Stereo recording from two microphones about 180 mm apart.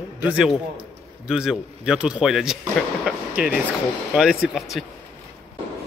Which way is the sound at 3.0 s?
5° right (ahead or behind).